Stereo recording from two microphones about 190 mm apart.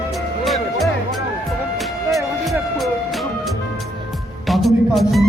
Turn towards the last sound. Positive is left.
turn(degrees=0)  # may be behind; listen again after turning